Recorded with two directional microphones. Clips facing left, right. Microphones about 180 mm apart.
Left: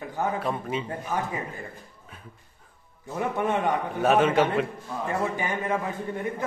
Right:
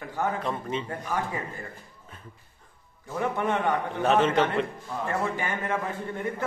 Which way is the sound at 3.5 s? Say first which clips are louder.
Left 1 dB; 15° left (ahead or behind).